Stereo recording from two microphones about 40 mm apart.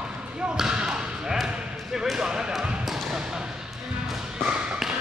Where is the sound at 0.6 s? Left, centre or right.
Centre.